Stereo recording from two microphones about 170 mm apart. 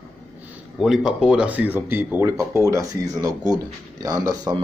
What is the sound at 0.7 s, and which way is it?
Speech, centre (ahead or behind).